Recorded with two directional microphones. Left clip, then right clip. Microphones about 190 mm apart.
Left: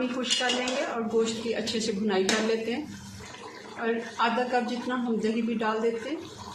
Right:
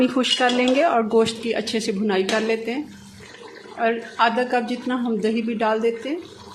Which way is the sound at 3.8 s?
40° right (ahead or behind).